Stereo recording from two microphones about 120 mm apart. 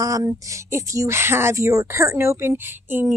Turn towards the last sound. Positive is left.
turn(degrees=-15)  # may be behind; listen again after turning